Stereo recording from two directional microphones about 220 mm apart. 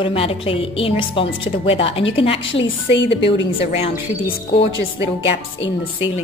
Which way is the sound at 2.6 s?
55° left (ahead or behind).